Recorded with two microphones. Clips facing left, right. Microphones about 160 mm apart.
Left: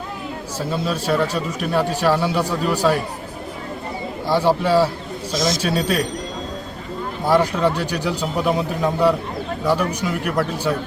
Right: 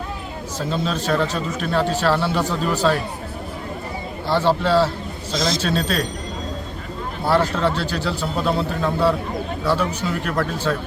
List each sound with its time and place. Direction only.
0.6 s speech: 10° left (ahead or behind)
4.3 s speech: 10° left (ahead or behind)
5.3 s speech: 25° right (ahead or behind)
5.6 s speech: 10° left (ahead or behind)
7.3 s speech: 15° left (ahead or behind)